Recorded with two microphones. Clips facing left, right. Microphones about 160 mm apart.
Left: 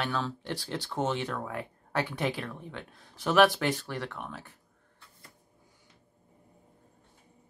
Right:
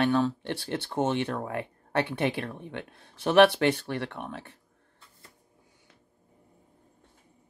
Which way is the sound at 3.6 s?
60° right (ahead or behind).